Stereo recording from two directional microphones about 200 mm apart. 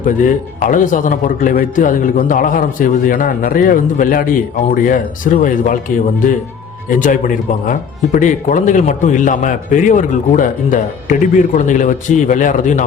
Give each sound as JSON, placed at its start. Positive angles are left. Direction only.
{"t": 0.0, "sound": "speech", "side_deg": 40}
{"t": 6.9, "sound": "speech", "side_deg": 40}